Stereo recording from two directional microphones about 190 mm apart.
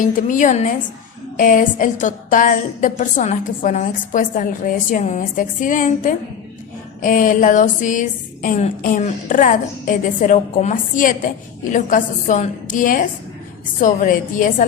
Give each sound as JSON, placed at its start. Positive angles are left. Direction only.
{"t": 0.0, "sound": "speech", "side_deg": 45}